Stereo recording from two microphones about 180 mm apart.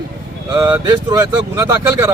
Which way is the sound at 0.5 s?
20° right (ahead or behind).